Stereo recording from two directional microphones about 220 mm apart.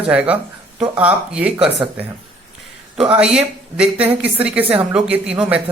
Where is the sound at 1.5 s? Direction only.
25° right (ahead or behind).